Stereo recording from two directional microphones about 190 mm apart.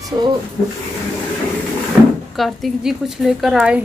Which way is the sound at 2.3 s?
Centre (ahead or behind).